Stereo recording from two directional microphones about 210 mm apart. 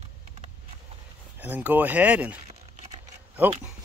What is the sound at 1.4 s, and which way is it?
Speech, 10° right (ahead or behind).